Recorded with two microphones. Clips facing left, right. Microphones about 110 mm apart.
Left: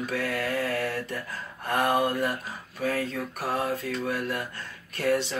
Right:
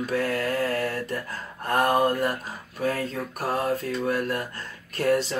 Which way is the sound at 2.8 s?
40° right (ahead or behind).